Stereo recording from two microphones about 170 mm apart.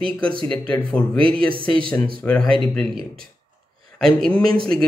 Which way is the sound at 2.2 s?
10° left (ahead or behind).